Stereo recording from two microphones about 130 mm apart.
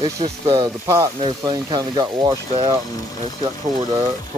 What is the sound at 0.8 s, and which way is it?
Speech, 20° right (ahead or behind).